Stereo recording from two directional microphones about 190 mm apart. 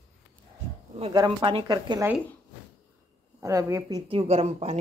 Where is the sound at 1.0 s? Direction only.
25° right (ahead or behind).